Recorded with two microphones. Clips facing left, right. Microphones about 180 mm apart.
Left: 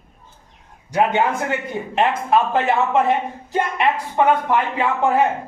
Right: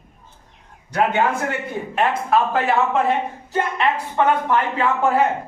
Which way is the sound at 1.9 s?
20° left (ahead or behind).